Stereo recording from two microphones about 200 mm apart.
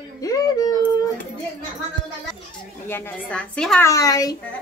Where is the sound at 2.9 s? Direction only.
10° left (ahead or behind).